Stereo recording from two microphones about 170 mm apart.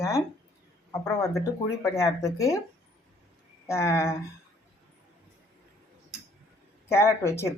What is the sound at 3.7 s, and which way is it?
Speech, 15° left (ahead or behind).